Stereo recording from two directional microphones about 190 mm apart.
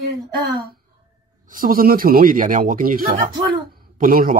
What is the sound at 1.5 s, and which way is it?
Speech, 45° right (ahead or behind).